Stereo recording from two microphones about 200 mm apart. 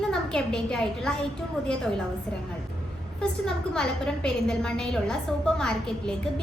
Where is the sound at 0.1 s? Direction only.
5° left (ahead or behind).